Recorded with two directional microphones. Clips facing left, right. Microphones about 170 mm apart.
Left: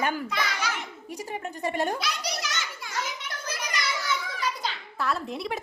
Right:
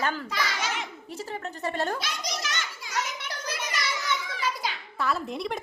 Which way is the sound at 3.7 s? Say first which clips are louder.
Left 1 dB; centre (ahead or behind).